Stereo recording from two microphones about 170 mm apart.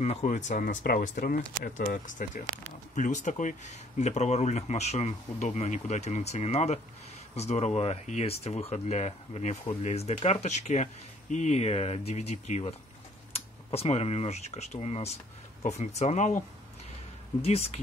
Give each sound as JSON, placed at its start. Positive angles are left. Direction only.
{"t": 0.0, "sound": "speech", "side_deg": 40}